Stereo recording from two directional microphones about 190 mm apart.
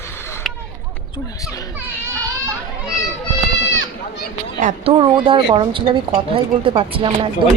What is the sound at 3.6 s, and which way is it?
Goat, 75° left (ahead or behind).